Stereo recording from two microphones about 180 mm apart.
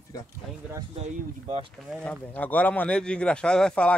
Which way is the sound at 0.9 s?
30° right (ahead or behind).